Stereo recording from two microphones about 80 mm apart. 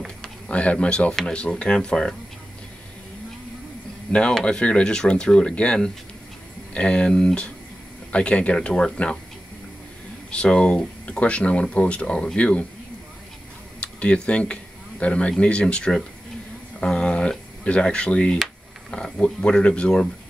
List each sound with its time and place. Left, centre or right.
0.0 s speech: centre
4.1 s speech: centre
10.3 s speech: centre
13.7 s speech: centre